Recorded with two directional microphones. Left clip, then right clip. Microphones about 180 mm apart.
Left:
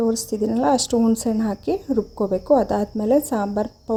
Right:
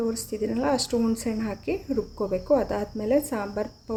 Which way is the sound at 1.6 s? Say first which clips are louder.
Left 5 dB; 10° left (ahead or behind).